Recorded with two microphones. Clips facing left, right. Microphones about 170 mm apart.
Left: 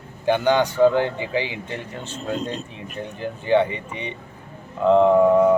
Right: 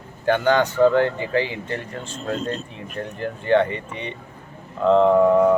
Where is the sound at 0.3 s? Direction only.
10° left (ahead or behind).